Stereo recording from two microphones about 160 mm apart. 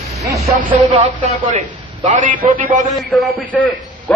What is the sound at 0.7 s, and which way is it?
Speech, 45° right (ahead or behind).